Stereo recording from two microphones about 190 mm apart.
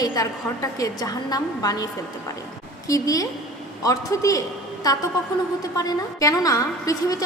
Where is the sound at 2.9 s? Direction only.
20° left (ahead or behind).